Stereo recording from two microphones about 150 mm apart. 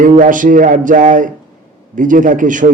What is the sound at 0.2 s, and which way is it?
A man's voice, 60° right (ahead or behind).